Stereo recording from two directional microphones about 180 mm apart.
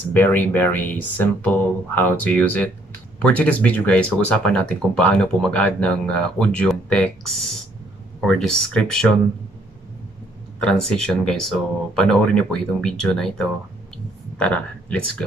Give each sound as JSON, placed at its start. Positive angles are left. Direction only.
{"t": 0.1, "sound": "speech", "side_deg": 10}
{"t": 10.6, "sound": "speech", "side_deg": 5}